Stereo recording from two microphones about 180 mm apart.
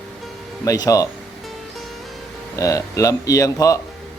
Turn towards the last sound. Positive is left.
turn(degrees=20)  # may be behind; listen again after turning